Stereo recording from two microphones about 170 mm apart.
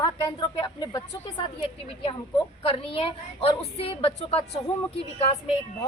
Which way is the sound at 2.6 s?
35° left (ahead or behind).